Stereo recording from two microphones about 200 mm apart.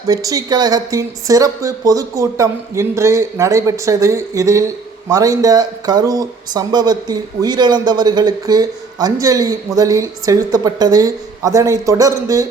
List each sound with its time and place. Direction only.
0.1 s speech: 15° right (ahead or behind)